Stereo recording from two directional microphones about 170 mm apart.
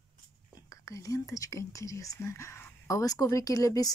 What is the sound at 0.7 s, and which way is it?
Speech, 20° left (ahead or behind).